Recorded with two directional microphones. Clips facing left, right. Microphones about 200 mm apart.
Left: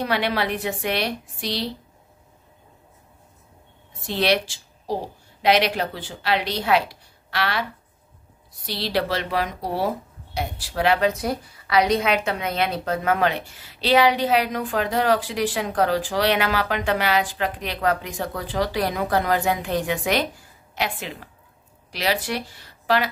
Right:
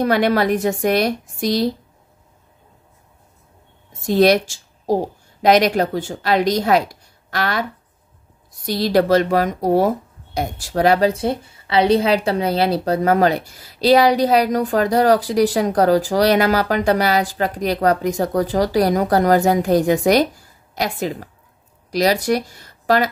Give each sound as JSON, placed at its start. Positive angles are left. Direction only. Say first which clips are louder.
{"t": 0.0, "sound": "a woman's voice", "louder": "right 7 dB", "side_deg": -45}
{"t": 4.0, "sound": "a woman's voice", "louder": "right 8 dB", "side_deg": -45}